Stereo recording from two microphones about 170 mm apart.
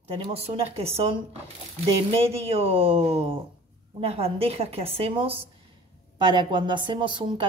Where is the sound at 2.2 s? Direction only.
35° right (ahead or behind).